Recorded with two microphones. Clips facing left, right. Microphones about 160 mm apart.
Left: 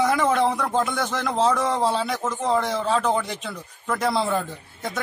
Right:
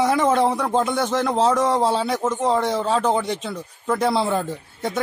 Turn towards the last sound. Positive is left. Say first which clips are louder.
# right 3 dB
turn(degrees=-25)  # may be behind; listen again after turning